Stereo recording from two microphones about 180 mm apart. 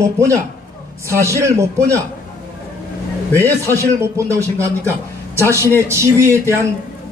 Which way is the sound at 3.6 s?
15° right (ahead or behind).